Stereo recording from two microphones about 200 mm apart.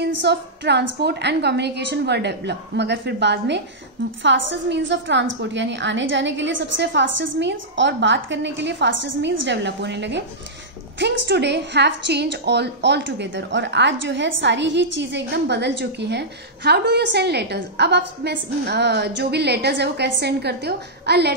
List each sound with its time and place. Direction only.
0.0 s a woman's voice: 60° right (ahead or behind)